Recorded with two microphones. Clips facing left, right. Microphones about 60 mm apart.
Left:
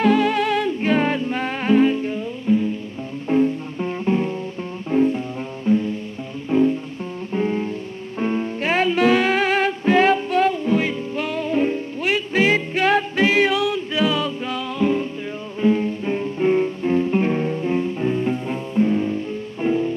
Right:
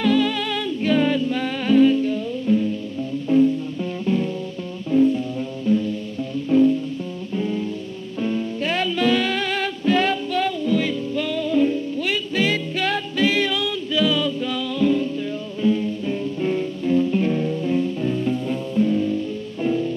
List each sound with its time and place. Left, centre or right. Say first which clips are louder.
0.0 s music: left 3 dB; left
3.3 s music: right 1 dB; left
7.3 s music: left 3 dB; left
13.3 s music: left 4 dB; centre
13.9 s music: right 3 dB; left